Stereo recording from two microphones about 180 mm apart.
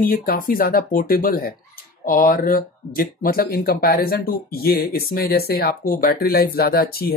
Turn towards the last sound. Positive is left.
turn(degrees=60)  # may be behind; listen again after turning